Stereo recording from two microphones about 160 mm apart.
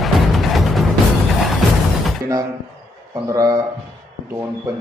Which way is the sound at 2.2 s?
25° right (ahead or behind).